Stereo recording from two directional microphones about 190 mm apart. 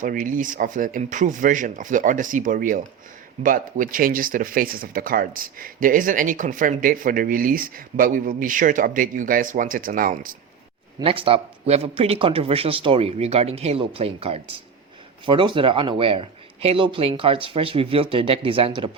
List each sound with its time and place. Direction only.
0.0 s speech: 45° right (ahead or behind)
11.0 s speech: 30° right (ahead or behind)